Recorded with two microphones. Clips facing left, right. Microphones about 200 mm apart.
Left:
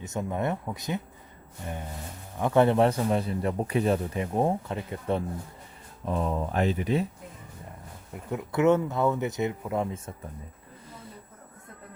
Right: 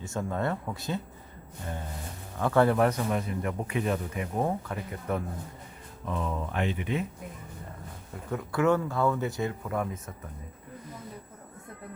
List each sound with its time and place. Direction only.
0.0 s speech: 20° left (ahead or behind)
2.4 s speech: 20° left (ahead or behind)
6.1 s speech: 35° left (ahead or behind)
8.1 s speech: 20° left (ahead or behind)